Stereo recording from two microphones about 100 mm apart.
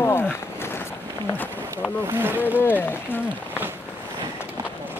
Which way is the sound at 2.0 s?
25° right (ahead or behind).